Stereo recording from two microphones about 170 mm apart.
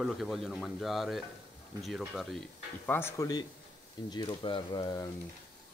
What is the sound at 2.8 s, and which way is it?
Speech, 15° left (ahead or behind).